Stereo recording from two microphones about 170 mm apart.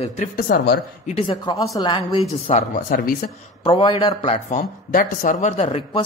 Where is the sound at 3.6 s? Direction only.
30° left (ahead or behind).